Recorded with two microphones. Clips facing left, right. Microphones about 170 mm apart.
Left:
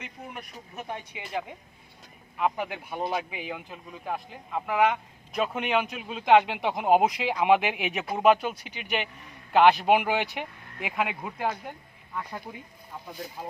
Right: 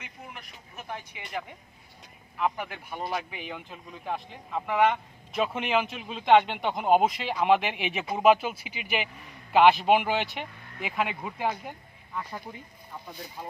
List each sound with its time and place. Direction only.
2.4 s a man's voice: 15° left (ahead or behind)